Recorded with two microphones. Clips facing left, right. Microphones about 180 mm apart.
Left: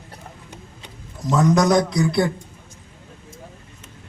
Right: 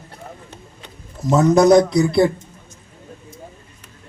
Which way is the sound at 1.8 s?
Centre (ahead or behind).